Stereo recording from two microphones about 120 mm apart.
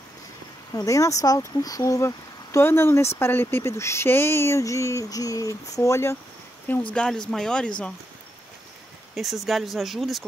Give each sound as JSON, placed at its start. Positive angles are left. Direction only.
{"t": 0.7, "sound": "speech", "side_deg": 25}
{"t": 6.9, "sound": "speech", "side_deg": 5}
{"t": 9.1, "sound": "speech", "side_deg": 0}